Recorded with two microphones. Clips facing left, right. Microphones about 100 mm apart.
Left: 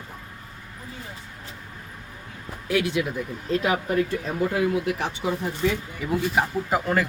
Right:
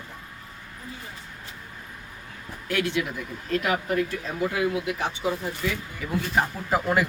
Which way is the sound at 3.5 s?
25° left (ahead or behind).